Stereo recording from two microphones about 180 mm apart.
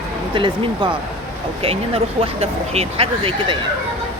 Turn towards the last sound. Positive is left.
turn(degrees=-30)  # may be behind; listen again after turning